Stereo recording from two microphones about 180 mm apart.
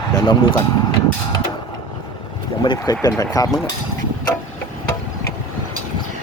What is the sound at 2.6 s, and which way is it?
Speech, 25° left (ahead or behind).